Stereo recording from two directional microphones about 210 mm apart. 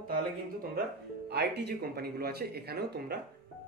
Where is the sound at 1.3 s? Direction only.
55° right (ahead or behind).